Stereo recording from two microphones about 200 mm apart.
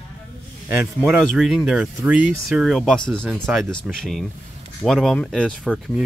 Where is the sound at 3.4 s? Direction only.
5° right (ahead or behind).